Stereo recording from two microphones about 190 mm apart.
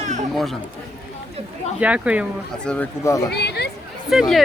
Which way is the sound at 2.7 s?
10° left (ahead or behind).